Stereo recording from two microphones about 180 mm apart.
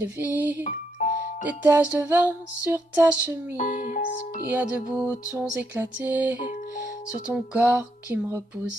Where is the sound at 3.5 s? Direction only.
45° left (ahead or behind).